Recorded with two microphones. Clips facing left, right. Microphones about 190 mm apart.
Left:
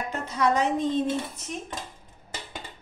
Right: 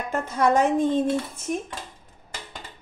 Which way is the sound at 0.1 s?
50° right (ahead or behind).